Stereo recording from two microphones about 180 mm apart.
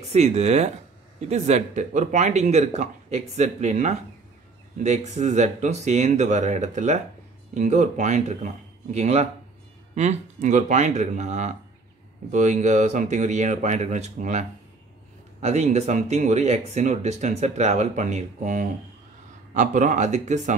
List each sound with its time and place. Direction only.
0.1 s speech: 40° right (ahead or behind)
15.4 s speech: 35° right (ahead or behind)